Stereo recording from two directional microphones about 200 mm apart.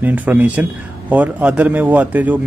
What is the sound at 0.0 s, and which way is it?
A man's voice, 10° right (ahead or behind).